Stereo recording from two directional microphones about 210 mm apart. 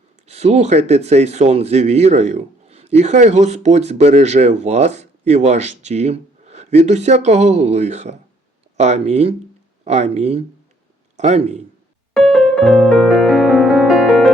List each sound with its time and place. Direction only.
0.3 s speech: 30° right (ahead or behind)
12.1 s music: centre (ahead or behind)